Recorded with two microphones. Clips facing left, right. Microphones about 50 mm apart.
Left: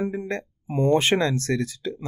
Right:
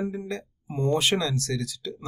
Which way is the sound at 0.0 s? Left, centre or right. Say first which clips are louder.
Left 3 dB; left.